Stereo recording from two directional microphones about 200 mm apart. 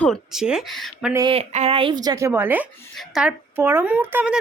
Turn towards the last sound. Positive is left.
turn(degrees=-5)  # may be behind; listen again after turning